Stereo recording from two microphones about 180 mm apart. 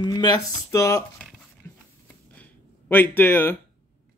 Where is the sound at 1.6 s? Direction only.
15° left (ahead or behind).